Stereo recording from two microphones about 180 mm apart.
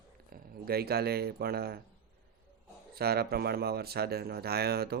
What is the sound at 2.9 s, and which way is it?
A man's voice, 60° right (ahead or behind).